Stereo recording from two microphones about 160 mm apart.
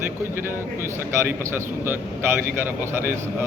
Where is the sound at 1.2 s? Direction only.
15° right (ahead or behind).